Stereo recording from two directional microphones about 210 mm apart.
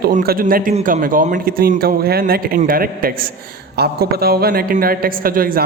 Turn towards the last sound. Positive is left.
turn(degrees=-45)  # may be behind; listen again after turning